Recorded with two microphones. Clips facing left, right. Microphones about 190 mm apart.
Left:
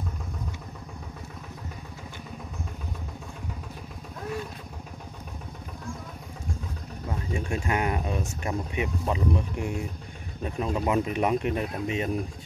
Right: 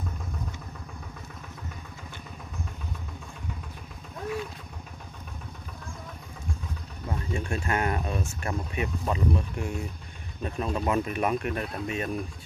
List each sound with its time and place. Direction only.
7.1 s speech: 15° left (ahead or behind)